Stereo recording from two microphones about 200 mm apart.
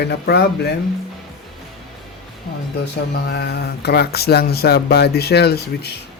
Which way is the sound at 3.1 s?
55° left (ahead or behind).